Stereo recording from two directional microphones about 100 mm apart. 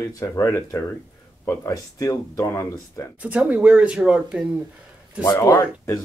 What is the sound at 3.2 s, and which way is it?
Speech, 15° right (ahead or behind).